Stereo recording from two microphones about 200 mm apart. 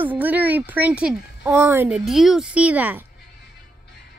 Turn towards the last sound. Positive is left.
turn(degrees=-10)  # may be behind; listen again after turning